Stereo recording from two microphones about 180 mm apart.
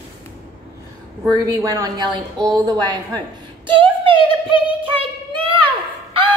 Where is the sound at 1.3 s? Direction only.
20° right (ahead or behind).